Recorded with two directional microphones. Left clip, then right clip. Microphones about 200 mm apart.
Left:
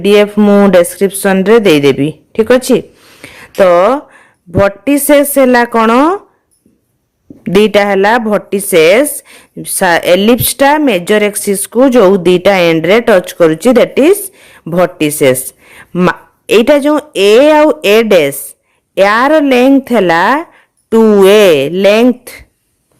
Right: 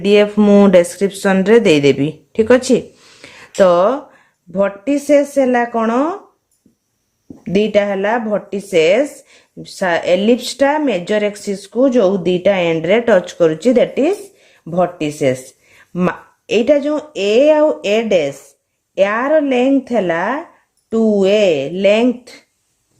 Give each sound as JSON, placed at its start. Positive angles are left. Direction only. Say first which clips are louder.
{"t": 0.0, "sound": "a woman's voice", "louder": "left 4 dB", "side_deg": 25}
{"t": 7.4, "sound": "speech", "louder": "left 6 dB", "side_deg": 35}